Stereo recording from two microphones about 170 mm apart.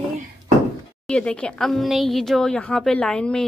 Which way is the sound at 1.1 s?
5° left (ahead or behind).